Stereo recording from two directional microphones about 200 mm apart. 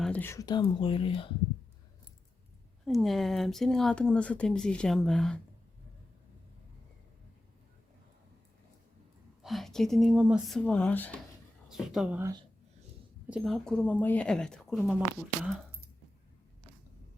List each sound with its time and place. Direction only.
0.0 s speech: 10° left (ahead or behind); by 1.3 s 25° left (ahead or behind)
2.8 s speech: centre (ahead or behind)
9.4 s speech: centre (ahead or behind)